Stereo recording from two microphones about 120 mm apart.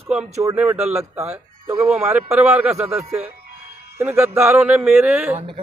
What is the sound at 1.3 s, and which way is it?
Speech, 25° right (ahead or behind).